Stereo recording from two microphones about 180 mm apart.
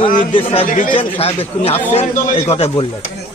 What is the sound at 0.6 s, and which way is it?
Speech, 50° left (ahead or behind).